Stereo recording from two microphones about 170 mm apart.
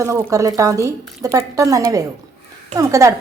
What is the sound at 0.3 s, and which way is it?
A woman's voice, 20° right (ahead or behind).